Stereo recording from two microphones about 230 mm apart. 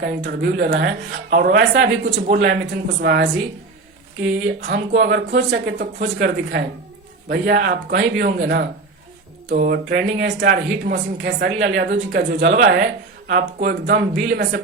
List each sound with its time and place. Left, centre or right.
0.0 s speech: right
4.4 s speech: right